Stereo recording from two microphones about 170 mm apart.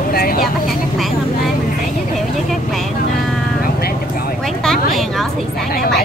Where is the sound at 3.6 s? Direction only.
60° left (ahead or behind).